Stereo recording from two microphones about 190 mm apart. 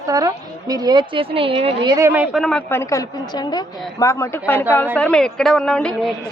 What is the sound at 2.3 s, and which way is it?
Speech, centre (ahead or behind).